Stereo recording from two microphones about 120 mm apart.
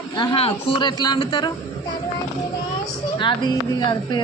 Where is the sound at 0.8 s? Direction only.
35° left (ahead or behind).